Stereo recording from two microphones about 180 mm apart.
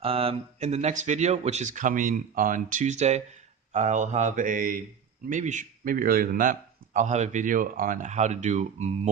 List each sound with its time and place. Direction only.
0.0 s a man's voice: 30° right (ahead or behind)